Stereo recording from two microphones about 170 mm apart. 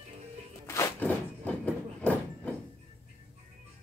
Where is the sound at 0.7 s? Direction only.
15° left (ahead or behind).